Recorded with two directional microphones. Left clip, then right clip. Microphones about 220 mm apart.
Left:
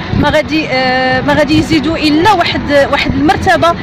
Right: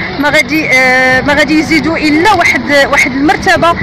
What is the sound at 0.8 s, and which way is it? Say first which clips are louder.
Speech: right 4 dB; 5° right (ahead or behind).